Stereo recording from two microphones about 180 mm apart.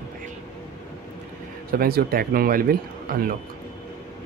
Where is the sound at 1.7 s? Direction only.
55° right (ahead or behind).